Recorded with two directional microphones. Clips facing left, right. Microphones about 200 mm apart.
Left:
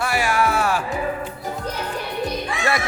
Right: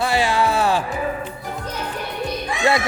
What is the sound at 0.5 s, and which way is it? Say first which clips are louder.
Music: right 2 dB; 30° right (ahead or behind).